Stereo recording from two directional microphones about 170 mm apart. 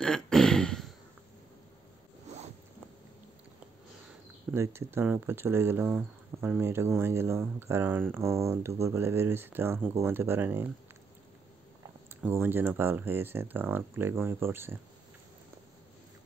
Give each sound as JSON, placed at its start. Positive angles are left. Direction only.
{"t": 0.0, "sound": "a sound", "side_deg": 5}
{"t": 4.6, "sound": "speech", "side_deg": -15}
{"t": 12.2, "sound": "speech", "side_deg": -10}